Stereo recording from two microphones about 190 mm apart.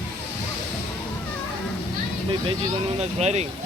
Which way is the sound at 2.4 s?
30° right (ahead or behind).